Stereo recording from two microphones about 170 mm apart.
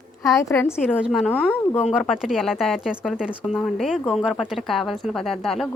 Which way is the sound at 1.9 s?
5° right (ahead or behind).